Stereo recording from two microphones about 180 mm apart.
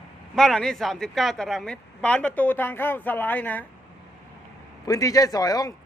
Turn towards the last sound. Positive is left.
turn(degrees=20)  # may be behind; listen again after turning